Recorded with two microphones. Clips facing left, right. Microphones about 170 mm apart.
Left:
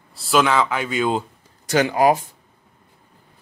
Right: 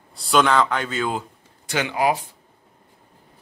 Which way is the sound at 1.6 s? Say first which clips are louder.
Left 5 dB; 40° left (ahead or behind).